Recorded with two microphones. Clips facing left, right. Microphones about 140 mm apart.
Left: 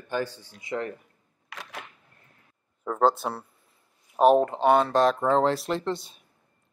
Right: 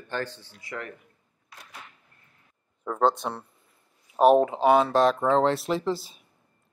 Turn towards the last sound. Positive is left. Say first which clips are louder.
# right 2 dB
turn(degrees=0)  # may be behind; listen again after turning